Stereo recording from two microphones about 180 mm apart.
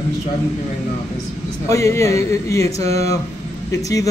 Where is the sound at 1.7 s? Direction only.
15° left (ahead or behind).